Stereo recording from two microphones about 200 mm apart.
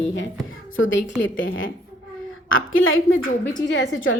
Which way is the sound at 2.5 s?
85° left.